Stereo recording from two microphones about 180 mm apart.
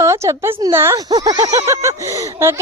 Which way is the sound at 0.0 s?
15° right (ahead or behind).